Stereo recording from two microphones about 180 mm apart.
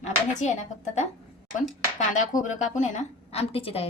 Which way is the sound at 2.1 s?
45° left (ahead or behind).